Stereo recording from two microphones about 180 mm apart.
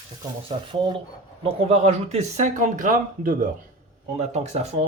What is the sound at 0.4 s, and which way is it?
Speech, 30° right (ahead or behind).